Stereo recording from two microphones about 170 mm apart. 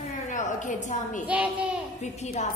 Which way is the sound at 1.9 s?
40° left (ahead or behind).